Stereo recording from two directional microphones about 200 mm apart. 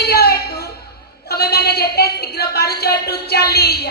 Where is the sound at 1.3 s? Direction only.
50° left (ahead or behind).